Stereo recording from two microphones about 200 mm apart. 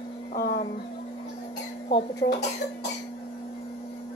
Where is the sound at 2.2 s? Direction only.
45° left (ahead or behind).